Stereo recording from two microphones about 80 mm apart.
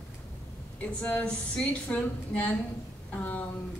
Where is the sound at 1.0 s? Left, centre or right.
Left.